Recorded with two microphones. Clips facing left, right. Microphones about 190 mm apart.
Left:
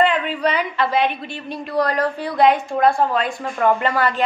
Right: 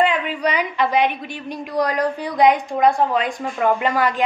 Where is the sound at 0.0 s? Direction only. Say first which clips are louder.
Left 1 dB; 15° right (ahead or behind).